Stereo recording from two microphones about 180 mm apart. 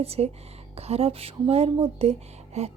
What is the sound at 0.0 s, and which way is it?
A woman's voice, 35° right (ahead or behind).